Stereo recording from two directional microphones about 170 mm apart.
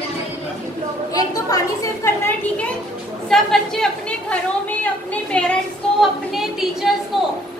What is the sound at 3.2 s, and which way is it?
A woman's voice, centre (ahead or behind).